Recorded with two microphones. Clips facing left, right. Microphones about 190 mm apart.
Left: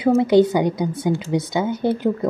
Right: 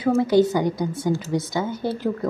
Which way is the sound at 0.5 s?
20° left (ahead or behind).